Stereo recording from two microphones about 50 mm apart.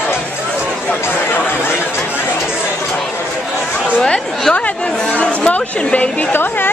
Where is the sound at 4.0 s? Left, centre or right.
Centre.